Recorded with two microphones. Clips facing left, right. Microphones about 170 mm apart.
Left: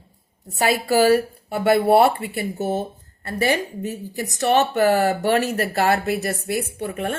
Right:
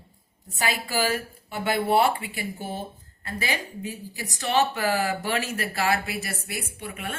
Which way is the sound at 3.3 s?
65° left (ahead or behind).